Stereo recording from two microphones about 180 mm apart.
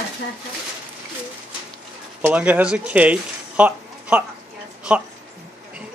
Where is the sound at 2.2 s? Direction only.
10° right (ahead or behind).